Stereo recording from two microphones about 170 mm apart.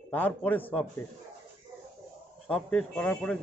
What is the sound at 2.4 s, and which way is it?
Speech, 5° left (ahead or behind).